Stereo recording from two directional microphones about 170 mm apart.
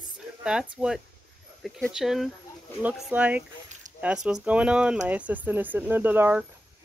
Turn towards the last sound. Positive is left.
turn(degrees=-10)  # may be behind; listen again after turning